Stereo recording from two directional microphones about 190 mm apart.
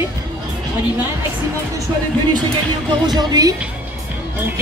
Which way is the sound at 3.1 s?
20° right (ahead or behind).